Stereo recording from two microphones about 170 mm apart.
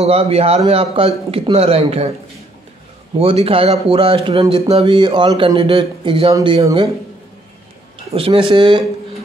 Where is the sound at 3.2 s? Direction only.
35° right (ahead or behind).